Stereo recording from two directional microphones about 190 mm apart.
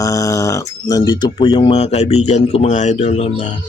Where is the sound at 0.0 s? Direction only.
15° left (ahead or behind).